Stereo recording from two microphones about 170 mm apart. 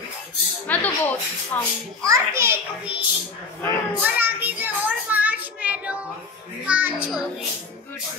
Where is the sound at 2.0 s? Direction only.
15° right (ahead or behind).